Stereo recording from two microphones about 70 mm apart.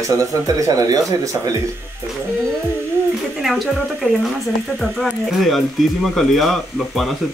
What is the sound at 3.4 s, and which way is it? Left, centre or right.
Speech, centre.